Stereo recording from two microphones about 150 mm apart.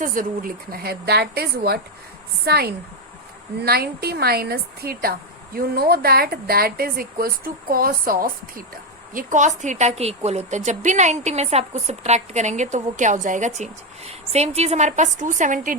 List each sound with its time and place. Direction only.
0.0 s a woman's voice: 65° right (ahead or behind)